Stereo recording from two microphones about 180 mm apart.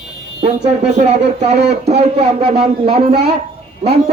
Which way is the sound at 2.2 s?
30° right (ahead or behind).